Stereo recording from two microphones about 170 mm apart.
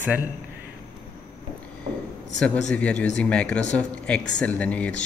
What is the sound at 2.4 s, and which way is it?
Speech, 5° left (ahead or behind).